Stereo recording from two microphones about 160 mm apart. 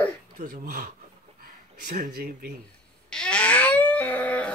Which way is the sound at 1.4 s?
65° right (ahead or behind).